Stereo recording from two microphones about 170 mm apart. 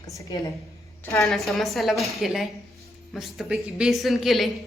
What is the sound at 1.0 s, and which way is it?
Speech, 15° left (ahead or behind).